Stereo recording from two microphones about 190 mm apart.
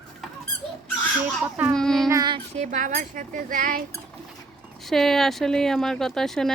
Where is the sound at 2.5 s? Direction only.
40° right (ahead or behind).